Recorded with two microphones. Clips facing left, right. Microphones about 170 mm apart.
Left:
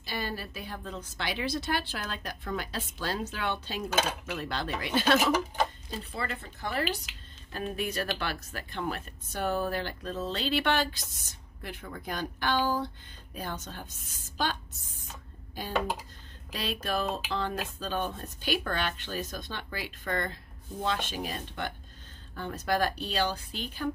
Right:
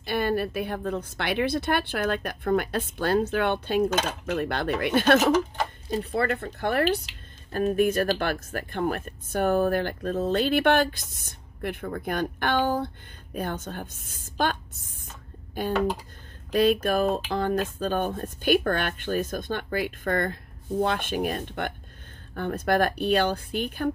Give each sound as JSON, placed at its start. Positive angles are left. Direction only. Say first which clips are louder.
{"t": 0.0, "sound": "a woman's voice", "louder": "right 10 dB", "side_deg": -60}
{"t": 7.5, "sound": "speech", "louder": "right 10 dB", "side_deg": -50}
{"t": 16.5, "sound": "a woman's voice", "louder": "right 11 dB", "side_deg": -50}